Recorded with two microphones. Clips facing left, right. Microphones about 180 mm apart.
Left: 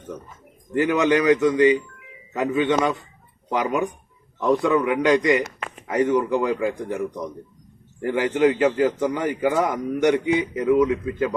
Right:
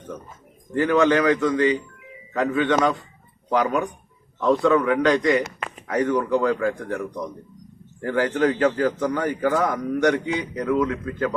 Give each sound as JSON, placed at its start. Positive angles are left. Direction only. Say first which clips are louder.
{"t": 0.7, "sound": "a man's voice", "louder": "right 1 dB", "side_deg": 15}
{"t": 8.0, "sound": "a man's voice", "louder": "left 2 dB", "side_deg": 15}